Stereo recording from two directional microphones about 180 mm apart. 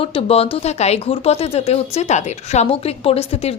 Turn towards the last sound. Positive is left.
turn(degrees=35)  # may be behind; listen again after turning